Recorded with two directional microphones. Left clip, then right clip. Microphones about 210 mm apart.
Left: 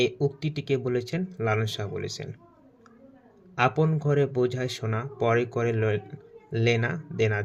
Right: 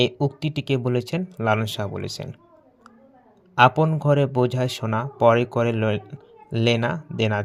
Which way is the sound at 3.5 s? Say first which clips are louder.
Right 8 dB; 30° right (ahead or behind).